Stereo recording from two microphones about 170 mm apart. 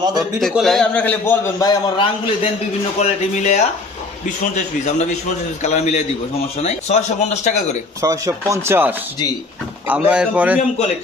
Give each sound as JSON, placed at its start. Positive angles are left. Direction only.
{"t": 0.3, "sound": "a man's voice", "side_deg": 0}
{"t": 3.0, "sound": "speech", "side_deg": 45}
{"t": 8.0, "sound": "speech", "side_deg": -20}